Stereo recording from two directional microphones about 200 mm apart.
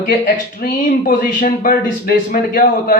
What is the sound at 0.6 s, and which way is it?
Speech, 40° left (ahead or behind).